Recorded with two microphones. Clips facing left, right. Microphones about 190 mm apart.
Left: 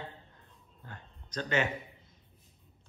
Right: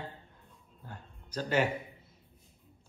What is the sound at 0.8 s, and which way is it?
Speech, 10° right (ahead or behind).